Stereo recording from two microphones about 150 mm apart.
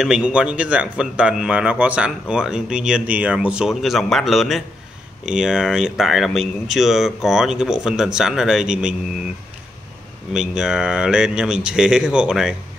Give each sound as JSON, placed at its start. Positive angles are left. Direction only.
{"t": 0.0, "sound": "speech", "side_deg": -5}
{"t": 10.3, "sound": "speech", "side_deg": -5}